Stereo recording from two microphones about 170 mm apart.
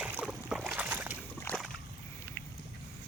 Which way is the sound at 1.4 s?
15° left (ahead or behind).